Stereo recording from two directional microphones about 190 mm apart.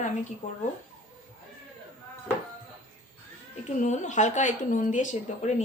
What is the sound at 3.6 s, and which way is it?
Speech, 40° left (ahead or behind).